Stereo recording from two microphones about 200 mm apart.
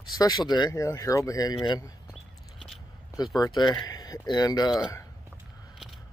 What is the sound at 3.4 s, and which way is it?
Speech, 20° left (ahead or behind).